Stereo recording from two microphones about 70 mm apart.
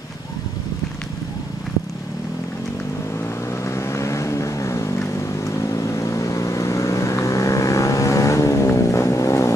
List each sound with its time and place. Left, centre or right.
3.6 s vehicle: left